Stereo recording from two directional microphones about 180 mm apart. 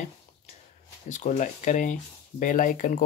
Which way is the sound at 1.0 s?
45° left (ahead or behind).